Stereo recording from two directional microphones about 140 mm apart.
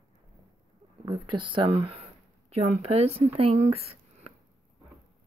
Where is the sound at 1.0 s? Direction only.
35° right (ahead or behind).